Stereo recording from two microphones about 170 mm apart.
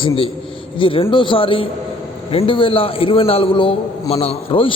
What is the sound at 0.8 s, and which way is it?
A man's voice, 30° left (ahead or behind).